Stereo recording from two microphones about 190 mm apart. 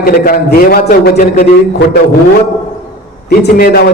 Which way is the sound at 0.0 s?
50° left (ahead or behind).